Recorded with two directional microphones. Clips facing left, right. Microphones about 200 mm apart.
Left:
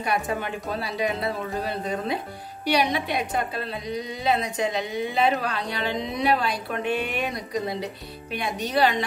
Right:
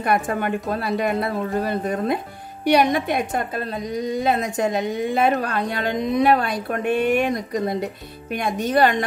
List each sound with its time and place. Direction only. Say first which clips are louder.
0.0 s a woman's voice: right 5 dB; 55° right (ahead or behind)